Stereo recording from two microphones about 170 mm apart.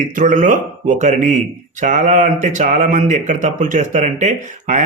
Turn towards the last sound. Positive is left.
turn(degrees=-45)  # may be behind; listen again after turning